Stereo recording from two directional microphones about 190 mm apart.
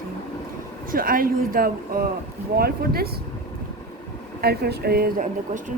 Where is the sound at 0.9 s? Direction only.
50° right (ahead or behind).